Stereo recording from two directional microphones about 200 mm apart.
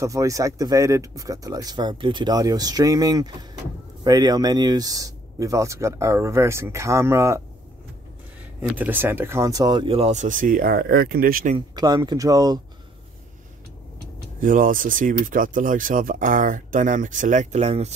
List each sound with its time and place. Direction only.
0.0 s speech: 15° right (ahead or behind)
8.5 s speech: 10° right (ahead or behind); by 11.5 s 45° right (ahead or behind)
11.5 s speech: 20° right (ahead or behind)
14.4 s speech: 40° right (ahead or behind)